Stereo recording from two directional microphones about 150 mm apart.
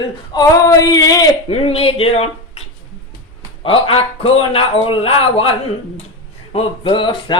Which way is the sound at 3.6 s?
40° left (ahead or behind).